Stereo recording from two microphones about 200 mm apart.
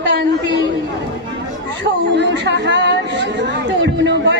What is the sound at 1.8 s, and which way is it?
Speech, 60° right (ahead or behind).